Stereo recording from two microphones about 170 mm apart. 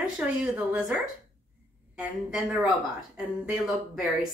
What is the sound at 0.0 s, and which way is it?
Speech, 5° right (ahead or behind).